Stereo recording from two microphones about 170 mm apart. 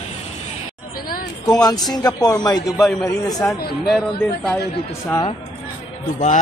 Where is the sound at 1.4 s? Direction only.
20° left (ahead or behind).